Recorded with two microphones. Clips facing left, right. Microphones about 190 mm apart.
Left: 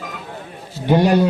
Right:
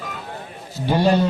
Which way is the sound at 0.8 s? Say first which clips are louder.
Left 3 dB; 15° left (ahead or behind).